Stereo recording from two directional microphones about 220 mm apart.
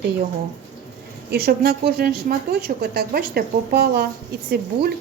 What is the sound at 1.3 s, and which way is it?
A woman's voice, 45° right (ahead or behind).